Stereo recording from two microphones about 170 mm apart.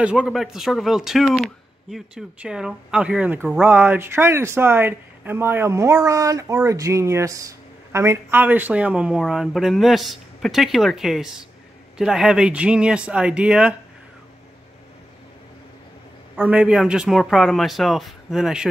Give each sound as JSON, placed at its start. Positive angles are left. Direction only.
{"t": 0.0, "sound": "a man's voice", "side_deg": -5}
{"t": 16.3, "sound": "a man's voice", "side_deg": -5}